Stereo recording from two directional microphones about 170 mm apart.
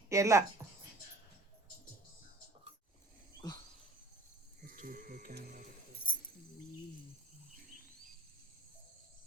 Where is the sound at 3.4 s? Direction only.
25° left (ahead or behind).